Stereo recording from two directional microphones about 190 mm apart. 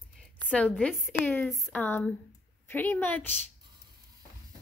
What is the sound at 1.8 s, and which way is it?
A woman's voice, 10° left (ahead or behind).